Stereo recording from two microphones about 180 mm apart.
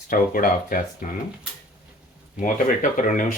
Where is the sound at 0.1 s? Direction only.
50° left (ahead or behind).